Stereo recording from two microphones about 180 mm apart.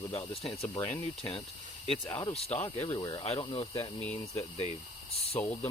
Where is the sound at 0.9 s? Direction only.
30° left (ahead or behind).